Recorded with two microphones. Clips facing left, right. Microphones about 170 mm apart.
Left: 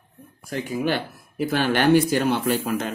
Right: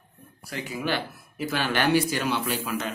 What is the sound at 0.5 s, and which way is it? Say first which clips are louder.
Speech: left 5 dB; 45° left (ahead or behind).